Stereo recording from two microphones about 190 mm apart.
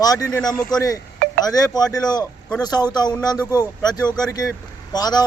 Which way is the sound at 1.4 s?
20° left (ahead or behind).